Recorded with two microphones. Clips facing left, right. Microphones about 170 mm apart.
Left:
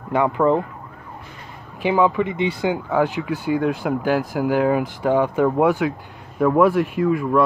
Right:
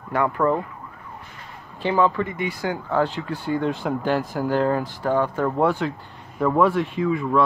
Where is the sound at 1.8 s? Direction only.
15° left (ahead or behind).